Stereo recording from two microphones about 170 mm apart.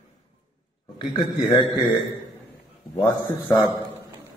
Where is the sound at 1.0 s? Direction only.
30° left (ahead or behind).